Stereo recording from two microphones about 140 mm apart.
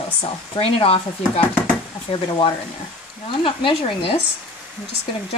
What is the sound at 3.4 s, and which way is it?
Speech, 40° left (ahead or behind).